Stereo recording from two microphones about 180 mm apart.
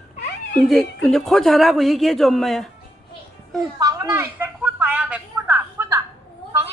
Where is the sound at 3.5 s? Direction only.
20° right (ahead or behind).